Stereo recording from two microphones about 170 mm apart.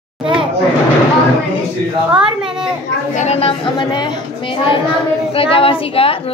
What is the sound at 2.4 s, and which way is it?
Children playing, 5° right (ahead or behind).